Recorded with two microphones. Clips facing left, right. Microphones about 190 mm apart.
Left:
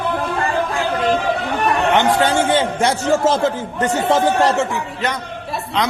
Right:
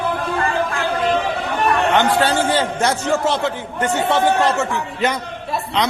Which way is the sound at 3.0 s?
40° left (ahead or behind).